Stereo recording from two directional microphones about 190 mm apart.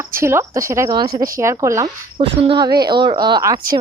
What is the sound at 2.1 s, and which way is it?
A woman's voice, 25° right (ahead or behind).